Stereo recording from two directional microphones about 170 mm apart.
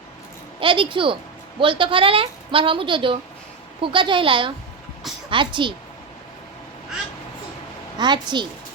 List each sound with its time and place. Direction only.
0.6 s a woman's voice: 30° right (ahead or behind)
7.9 s a woman's voice: 25° right (ahead or behind)